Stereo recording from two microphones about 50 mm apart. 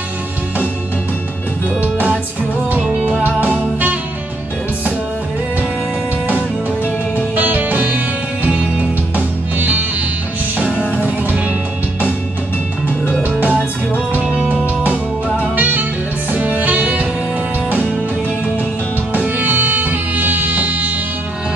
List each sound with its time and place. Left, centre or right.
3.3 s music: right
7.3 s music: right
9.1 s music: right
13.2 s music: right
19.1 s music: right